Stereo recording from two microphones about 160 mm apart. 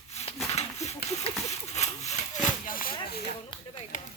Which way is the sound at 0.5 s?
45° left (ahead or behind).